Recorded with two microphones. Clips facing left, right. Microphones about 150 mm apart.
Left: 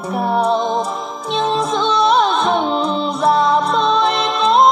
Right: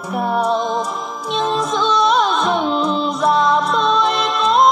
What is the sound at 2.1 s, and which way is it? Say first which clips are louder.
Music: left 2 dB; 30° left (ahead or behind).